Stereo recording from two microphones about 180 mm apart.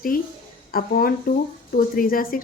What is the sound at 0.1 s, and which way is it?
A woman's voice, 50° left (ahead or behind).